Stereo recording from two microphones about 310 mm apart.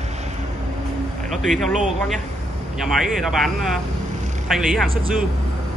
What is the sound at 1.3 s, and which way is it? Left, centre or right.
Speech, centre.